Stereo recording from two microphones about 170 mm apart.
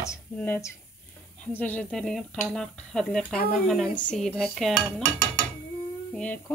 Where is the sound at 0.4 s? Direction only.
10° left (ahead or behind).